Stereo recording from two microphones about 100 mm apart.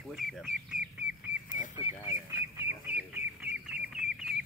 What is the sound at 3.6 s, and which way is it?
Chicken, 5° right (ahead or behind).